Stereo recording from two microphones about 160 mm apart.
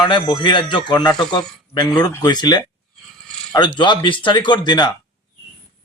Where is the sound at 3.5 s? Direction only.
30° left (ahead or behind).